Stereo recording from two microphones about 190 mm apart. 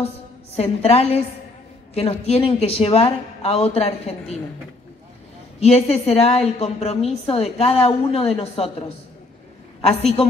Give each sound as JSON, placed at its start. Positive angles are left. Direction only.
{"t": 0.6, "sound": "a woman's voice", "side_deg": 35}
{"t": 5.6, "sound": "a woman's voice", "side_deg": 35}